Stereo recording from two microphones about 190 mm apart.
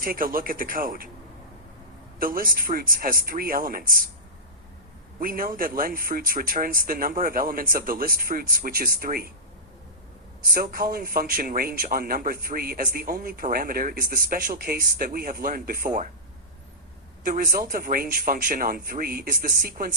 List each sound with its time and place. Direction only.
0.0 s a man's voice: 50° right (ahead or behind)
2.1 s a man's voice: 50° right (ahead or behind)
5.2 s a man's voice: 50° right (ahead or behind)
10.5 s a man's voice: 50° right (ahead or behind)
17.2 s a man's voice: 45° right (ahead or behind)